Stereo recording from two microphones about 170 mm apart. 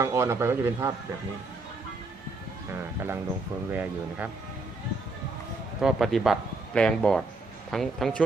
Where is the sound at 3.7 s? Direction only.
10° right (ahead or behind).